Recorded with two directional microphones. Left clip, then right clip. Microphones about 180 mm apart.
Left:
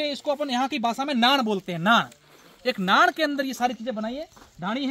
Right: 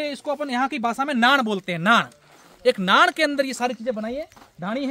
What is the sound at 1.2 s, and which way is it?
Speech, 20° left (ahead or behind).